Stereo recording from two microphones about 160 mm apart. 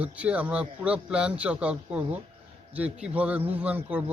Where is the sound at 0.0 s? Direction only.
10° right (ahead or behind).